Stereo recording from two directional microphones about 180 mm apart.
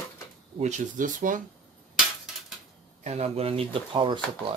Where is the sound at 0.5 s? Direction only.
40° right (ahead or behind).